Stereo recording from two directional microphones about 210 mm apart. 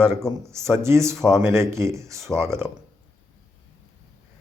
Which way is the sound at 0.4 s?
15° right (ahead or behind).